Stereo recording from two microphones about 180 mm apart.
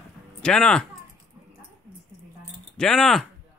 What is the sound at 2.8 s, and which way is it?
Speech, centre (ahead or behind).